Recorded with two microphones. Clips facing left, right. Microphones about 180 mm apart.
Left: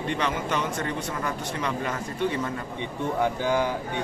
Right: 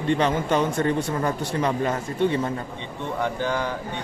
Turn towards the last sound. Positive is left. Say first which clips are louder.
# left 1 dB
turn(degrees=10)  # may be behind; listen again after turning